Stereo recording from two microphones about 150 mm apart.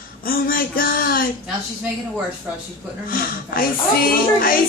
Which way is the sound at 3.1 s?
70° left (ahead or behind).